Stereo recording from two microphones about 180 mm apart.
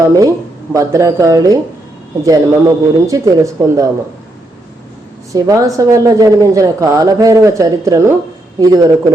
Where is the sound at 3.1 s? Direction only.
20° right (ahead or behind).